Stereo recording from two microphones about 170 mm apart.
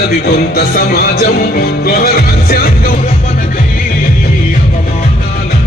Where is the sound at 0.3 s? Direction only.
65° left (ahead or behind).